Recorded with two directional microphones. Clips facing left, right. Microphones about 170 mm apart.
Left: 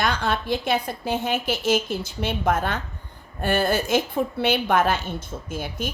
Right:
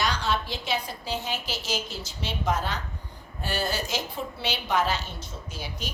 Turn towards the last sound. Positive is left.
turn(degrees=50)  # may be behind; listen again after turning